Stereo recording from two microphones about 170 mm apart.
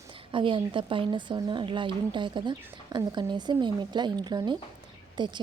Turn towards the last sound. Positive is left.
turn(degrees=-25)  # may be behind; listen again after turning